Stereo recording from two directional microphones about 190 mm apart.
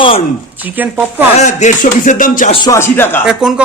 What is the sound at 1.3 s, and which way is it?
Speech, 40° left (ahead or behind).